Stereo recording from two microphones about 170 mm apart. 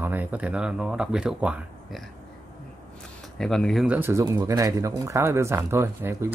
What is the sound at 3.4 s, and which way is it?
Speech, 5° left (ahead or behind).